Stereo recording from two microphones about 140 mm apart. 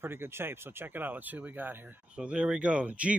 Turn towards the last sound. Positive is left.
turn(degrees=-10)  # may be behind; listen again after turning